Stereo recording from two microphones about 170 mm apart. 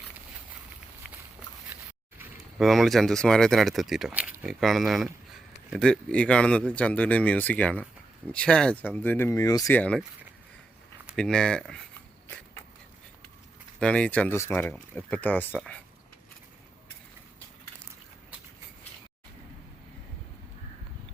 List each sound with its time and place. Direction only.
2.6 s speech: centre (ahead or behind); by 9.7 s 20° left (ahead or behind)
9.7 s speech: 5° left (ahead or behind)
11.2 s speech: 5° left (ahead or behind)
13.7 s speech: 5° left (ahead or behind)